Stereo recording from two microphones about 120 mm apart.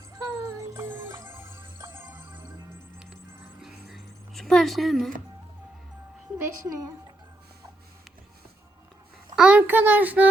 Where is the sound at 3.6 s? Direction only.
Centre (ahead or behind).